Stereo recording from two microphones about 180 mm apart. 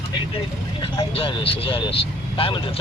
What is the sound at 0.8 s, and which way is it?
Speech, 30° left (ahead or behind).